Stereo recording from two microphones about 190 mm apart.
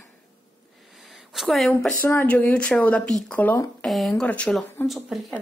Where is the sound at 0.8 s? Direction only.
Centre (ahead or behind).